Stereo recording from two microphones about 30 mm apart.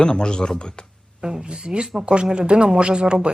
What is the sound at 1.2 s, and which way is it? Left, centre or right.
Speech, right.